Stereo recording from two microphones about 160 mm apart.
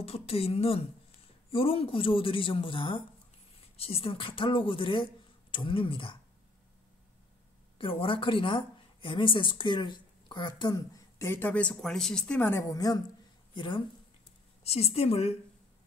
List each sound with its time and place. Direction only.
0.0 s a woman's voice: 40° left (ahead or behind)
7.8 s a woman's voice: 35° left (ahead or behind)